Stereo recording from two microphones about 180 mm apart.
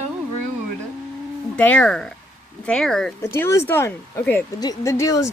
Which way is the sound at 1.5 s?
5° left (ahead or behind).